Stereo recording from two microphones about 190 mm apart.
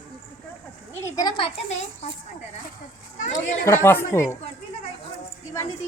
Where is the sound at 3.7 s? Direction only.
15° left (ahead or behind).